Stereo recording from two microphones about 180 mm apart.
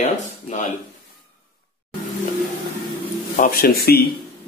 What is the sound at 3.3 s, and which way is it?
Speech, 50° left (ahead or behind).